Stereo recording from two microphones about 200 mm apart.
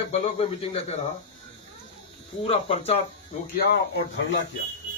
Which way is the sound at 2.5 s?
30° left (ahead or behind).